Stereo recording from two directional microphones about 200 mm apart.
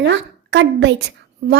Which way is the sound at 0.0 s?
60° right (ahead or behind).